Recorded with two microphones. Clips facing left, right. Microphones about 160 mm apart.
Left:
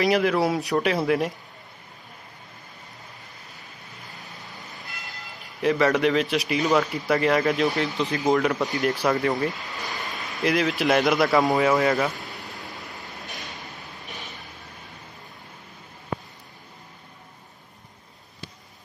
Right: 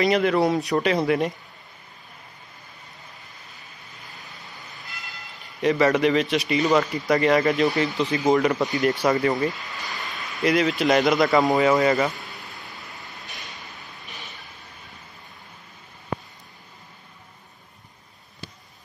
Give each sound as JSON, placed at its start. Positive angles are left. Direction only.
{"t": 0.0, "sound": "speech", "side_deg": 0}
{"t": 4.6, "sound": "vehicle", "side_deg": 0}
{"t": 5.4, "sound": "speech", "side_deg": 0}
{"t": 12.3, "sound": "vehicle", "side_deg": 40}